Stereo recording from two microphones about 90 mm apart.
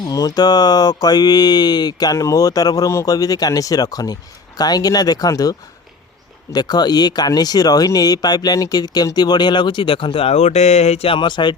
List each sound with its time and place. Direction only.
0.0 s mantra: 40° left (ahead or behind); by 10.3 s 80° left
11.0 s speech: 70° left (ahead or behind)